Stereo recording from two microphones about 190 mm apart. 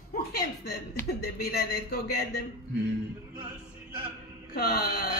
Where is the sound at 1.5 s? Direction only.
55° left (ahead or behind).